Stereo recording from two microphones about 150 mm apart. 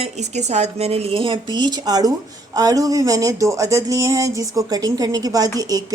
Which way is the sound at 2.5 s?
25° right (ahead or behind).